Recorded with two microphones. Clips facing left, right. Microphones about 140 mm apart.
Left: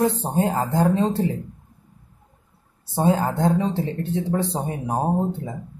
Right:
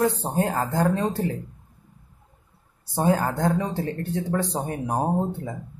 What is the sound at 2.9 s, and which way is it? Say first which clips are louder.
Speech: left 2 dB; 20° left (ahead or behind).